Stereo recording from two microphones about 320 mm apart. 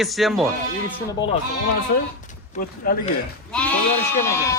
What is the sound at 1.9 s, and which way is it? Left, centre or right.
Speech, left.